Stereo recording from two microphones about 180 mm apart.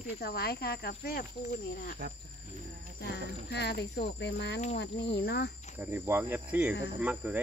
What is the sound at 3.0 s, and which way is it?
Speech, 70° left (ahead or behind).